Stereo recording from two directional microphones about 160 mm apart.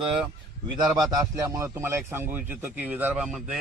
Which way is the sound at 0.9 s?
25° right (ahead or behind).